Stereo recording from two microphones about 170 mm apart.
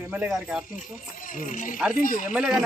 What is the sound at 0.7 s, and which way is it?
Speech, 50° left (ahead or behind).